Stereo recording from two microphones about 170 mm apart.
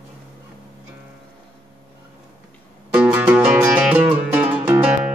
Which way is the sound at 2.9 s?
10° right (ahead or behind).